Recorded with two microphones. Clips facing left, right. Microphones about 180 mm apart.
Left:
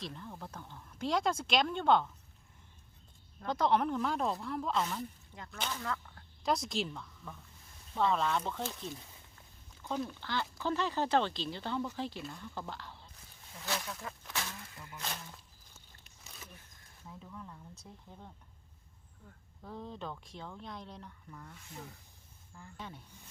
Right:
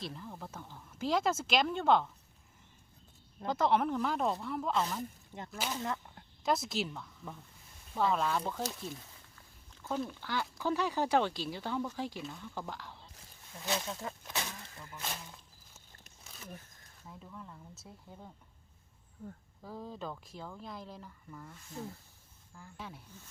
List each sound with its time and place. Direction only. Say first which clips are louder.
0.0 s speech: right 1 dB; centre (ahead or behind)
3.4 s speech: even; 5° right (ahead or behind)
5.7 s speech: right 2 dB; 20° right (ahead or behind)
6.4 s speech: right 1 dB; centre (ahead or behind)
9.8 s speech: right 1 dB; 5° right (ahead or behind)
12.2 s speech: right 1 dB; centre (ahead or behind)
13.7 s speech: right 3 dB; 25° right (ahead or behind)
14.9 s speech: even; 5° right (ahead or behind)
17.1 s speech: left 1 dB; centre (ahead or behind)
19.6 s speech: right 1 dB; 5° right (ahead or behind)